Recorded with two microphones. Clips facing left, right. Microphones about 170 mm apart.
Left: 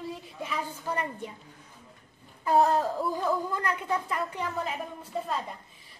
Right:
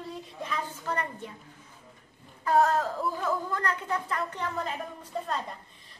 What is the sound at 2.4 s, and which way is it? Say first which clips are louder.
A woman's voice: left 1 dB; 15° left (ahead or behind).